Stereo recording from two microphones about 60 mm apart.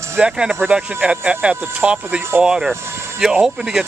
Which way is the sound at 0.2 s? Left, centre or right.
Centre.